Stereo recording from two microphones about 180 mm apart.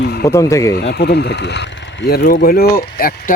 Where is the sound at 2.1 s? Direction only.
55° left (ahead or behind).